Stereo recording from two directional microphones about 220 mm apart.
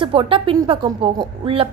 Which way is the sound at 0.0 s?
25° right (ahead or behind).